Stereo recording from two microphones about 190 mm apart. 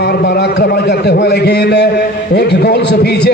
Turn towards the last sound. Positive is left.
turn(degrees=60)  # may be behind; listen again after turning